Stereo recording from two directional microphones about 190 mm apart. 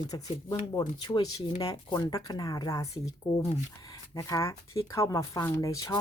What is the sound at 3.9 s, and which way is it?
Speech, 15° left (ahead or behind).